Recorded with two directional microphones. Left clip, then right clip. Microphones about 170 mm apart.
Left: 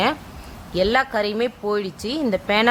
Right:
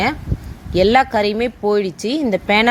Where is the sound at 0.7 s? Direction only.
15° right (ahead or behind).